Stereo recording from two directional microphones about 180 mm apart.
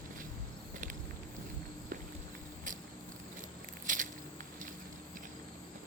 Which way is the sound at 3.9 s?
45° right (ahead or behind).